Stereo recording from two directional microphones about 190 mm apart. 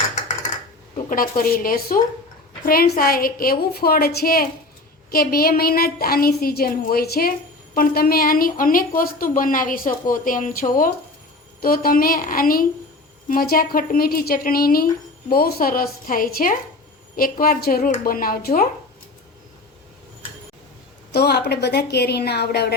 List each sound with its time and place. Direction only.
1.1 s a woman's voice: 50° left (ahead or behind)
21.1 s a woman's voice: 60° left (ahead or behind)